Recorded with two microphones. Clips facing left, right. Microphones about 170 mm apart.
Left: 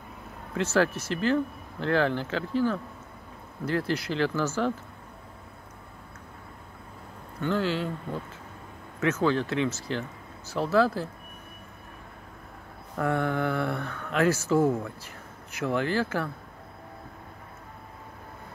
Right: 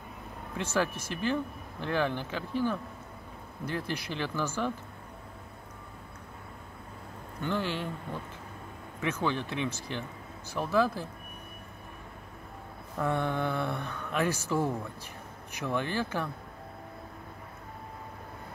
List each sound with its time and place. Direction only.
0.6 s speech: 10° right (ahead or behind)
7.4 s speech: 15° right (ahead or behind)
9.0 s speech: 15° right (ahead or behind)
13.0 s speech: 20° right (ahead or behind)
15.7 s speech: 20° right (ahead or behind)